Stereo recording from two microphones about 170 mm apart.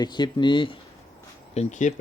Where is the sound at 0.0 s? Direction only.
25° left (ahead or behind).